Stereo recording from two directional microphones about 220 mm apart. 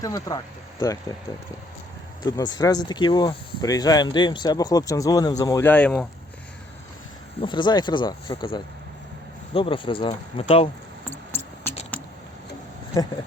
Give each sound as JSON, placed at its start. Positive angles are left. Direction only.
{"t": 0.0, "sound": "speech", "side_deg": 15}
{"t": 2.2, "sound": "speech", "side_deg": 15}
{"t": 7.4, "sound": "speech", "side_deg": 20}
{"t": 11.1, "sound": "mouse", "side_deg": 10}
{"t": 11.9, "sound": "a sound", "side_deg": 5}